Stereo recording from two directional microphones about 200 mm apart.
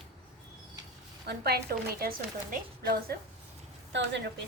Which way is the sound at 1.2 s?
50° right (ahead or behind).